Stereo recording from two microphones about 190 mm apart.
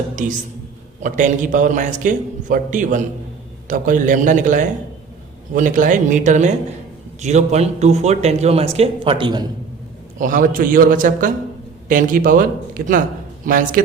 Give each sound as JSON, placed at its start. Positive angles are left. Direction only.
{"t": 1.0, "sound": "a man's voice", "side_deg": -40}
{"t": 10.2, "sound": "a man's voice", "side_deg": -45}